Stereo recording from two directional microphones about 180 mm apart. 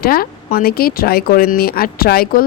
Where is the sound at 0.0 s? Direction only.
55° left (ahead or behind).